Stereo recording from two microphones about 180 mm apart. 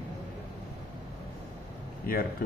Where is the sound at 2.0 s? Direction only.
55° left (ahead or behind).